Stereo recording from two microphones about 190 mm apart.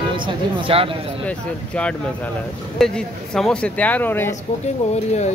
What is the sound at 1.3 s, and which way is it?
Speech, 5° left (ahead or behind).